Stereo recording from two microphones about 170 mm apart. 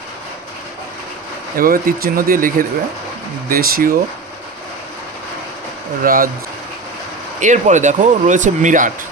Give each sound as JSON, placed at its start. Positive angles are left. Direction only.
{"t": 1.5, "sound": "speech", "side_deg": -60}
{"t": 6.0, "sound": "speech", "side_deg": -55}
{"t": 7.3, "sound": "speech", "side_deg": -45}